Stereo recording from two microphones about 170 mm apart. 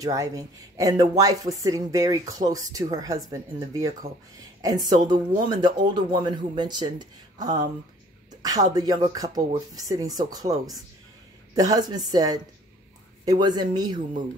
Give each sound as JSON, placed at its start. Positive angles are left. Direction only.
{"t": 0.0, "sound": "speech", "side_deg": -20}